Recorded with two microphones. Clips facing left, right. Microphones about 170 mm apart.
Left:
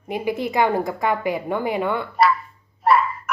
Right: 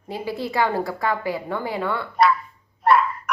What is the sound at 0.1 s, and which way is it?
A woman's voice, 20° left (ahead or behind).